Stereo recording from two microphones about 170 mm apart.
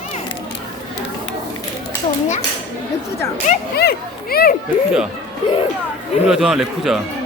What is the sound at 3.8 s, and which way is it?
Speech, 70° left (ahead or behind).